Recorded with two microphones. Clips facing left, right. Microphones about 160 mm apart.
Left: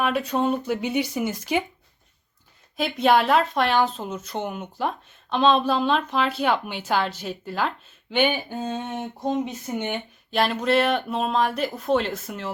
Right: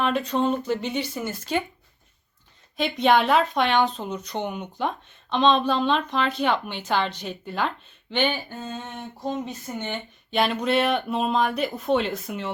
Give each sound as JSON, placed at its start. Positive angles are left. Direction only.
{"t": 0.0, "sound": "speech", "side_deg": 10}
{"t": 2.7, "sound": "speech", "side_deg": 5}
{"t": 8.1, "sound": "speech", "side_deg": 10}
{"t": 10.3, "sound": "speech", "side_deg": 0}